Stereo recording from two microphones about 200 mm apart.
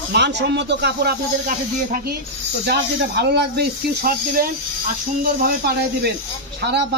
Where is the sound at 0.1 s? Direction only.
60° right (ahead or behind).